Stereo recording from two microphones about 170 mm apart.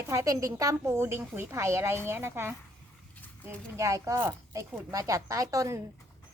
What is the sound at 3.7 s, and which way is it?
A woman's voice, 20° right (ahead or behind).